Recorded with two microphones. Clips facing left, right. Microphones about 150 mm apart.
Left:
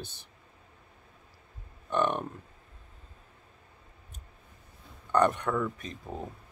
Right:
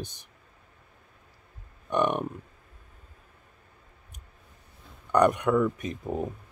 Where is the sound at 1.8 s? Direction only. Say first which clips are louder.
Right 3 dB; 15° right (ahead or behind).